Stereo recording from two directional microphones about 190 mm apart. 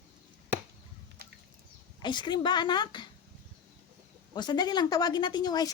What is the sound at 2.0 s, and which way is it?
Speech, 25° left (ahead or behind).